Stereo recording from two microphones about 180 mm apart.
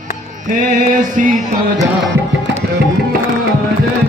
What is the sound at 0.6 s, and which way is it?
Music, 50° right (ahead or behind).